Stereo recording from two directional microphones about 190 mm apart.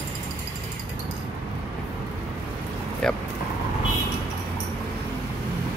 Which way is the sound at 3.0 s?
5° left (ahead or behind).